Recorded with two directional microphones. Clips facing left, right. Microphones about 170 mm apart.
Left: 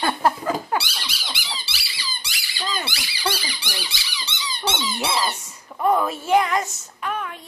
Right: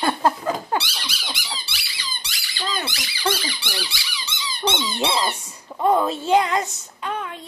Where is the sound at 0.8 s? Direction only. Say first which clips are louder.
Even; 5° left (ahead or behind).